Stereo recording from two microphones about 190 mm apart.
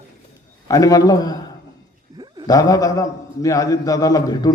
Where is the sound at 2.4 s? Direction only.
20° left (ahead or behind).